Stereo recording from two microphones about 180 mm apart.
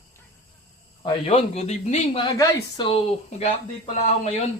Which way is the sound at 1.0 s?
35° left (ahead or behind).